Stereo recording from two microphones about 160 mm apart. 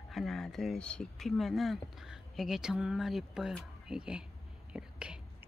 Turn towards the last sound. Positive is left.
turn(degrees=-5)  # may be behind; listen again after turning